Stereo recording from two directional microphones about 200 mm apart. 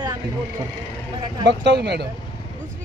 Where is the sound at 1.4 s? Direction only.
60° right (ahead or behind).